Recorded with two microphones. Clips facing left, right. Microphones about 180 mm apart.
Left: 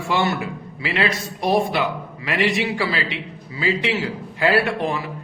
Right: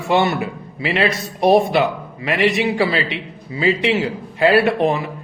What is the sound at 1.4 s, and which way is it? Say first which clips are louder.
Speech: right 6 dB; 65° right (ahead or behind).